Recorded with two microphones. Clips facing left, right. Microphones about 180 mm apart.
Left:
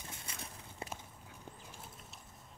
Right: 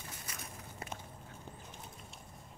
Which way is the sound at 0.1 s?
25° left (ahead or behind).